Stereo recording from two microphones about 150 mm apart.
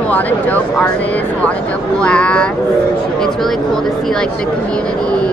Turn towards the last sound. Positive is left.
turn(degrees=5)  # may be behind; listen again after turning